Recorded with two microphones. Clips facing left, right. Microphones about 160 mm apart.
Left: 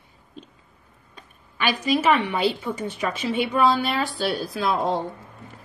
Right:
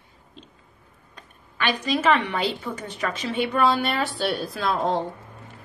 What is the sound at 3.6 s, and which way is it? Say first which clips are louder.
A woman's voice: left 1 dB; centre (ahead or behind).